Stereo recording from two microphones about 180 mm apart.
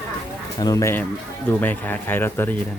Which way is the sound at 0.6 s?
20° left (ahead or behind).